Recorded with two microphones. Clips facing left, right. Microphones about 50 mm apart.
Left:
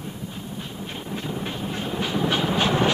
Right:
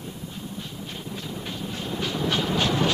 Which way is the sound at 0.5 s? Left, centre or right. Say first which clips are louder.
Left 2 dB; left.